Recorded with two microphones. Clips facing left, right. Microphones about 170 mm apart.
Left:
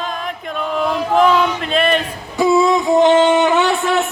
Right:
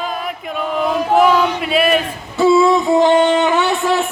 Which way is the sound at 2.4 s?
15° left (ahead or behind).